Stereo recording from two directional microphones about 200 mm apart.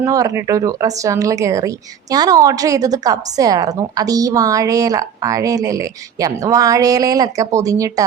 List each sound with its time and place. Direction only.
0.0 s speech: 15° right (ahead or behind)